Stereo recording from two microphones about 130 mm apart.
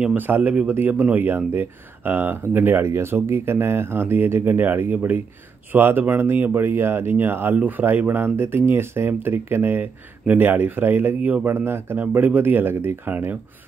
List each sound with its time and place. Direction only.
0.0 s speech: 15° right (ahead or behind)